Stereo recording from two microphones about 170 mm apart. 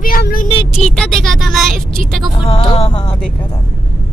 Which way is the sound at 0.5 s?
35° left (ahead or behind).